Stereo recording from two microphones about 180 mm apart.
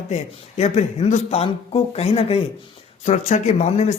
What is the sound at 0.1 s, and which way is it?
A man's voice, 40° left (ahead or behind).